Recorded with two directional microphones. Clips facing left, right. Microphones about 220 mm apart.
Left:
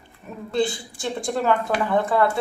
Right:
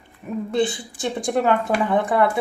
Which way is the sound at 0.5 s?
20° right (ahead or behind).